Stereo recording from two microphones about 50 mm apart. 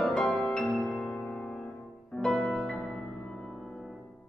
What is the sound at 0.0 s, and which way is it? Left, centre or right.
Music, centre.